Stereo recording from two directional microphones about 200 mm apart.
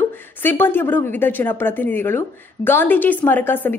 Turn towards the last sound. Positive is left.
turn(degrees=10)  # may be behind; listen again after turning